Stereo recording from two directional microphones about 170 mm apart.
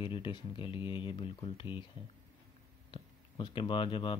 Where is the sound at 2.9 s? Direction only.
30° left (ahead or behind).